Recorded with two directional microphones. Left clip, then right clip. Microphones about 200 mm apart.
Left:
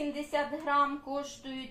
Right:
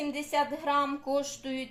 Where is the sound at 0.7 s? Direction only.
55° right (ahead or behind).